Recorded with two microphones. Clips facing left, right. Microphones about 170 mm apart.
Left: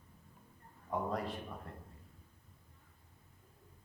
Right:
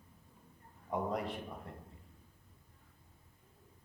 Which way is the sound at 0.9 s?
15° right (ahead or behind).